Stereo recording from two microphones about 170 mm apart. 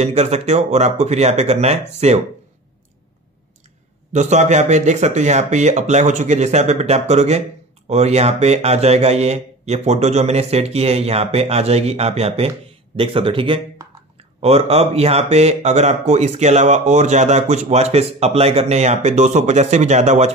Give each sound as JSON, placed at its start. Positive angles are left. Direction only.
{"t": 0.0, "sound": "speech", "side_deg": -40}
{"t": 4.1, "sound": "speech", "side_deg": -45}